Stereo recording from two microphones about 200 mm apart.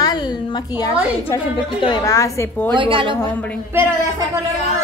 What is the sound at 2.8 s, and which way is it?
Speech, 25° right (ahead or behind).